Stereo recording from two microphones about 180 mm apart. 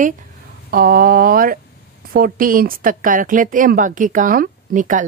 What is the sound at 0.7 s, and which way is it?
Speech, 55° right (ahead or behind).